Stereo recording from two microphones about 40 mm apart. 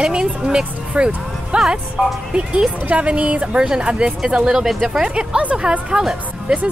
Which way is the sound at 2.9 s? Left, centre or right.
Right.